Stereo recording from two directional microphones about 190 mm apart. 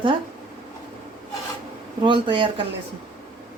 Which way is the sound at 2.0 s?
25° right (ahead or behind).